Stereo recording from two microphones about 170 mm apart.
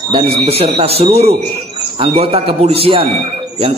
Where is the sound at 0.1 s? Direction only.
35° right (ahead or behind).